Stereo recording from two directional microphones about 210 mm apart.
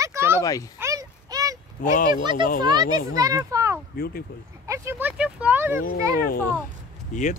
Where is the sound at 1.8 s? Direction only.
40° left (ahead or behind).